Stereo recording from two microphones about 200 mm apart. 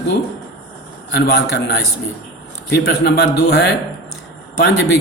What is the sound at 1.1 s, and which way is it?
Speech, 55° left (ahead or behind).